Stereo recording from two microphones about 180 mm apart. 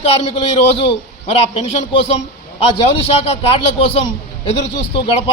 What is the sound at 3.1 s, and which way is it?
Speech, 30° left (ahead or behind).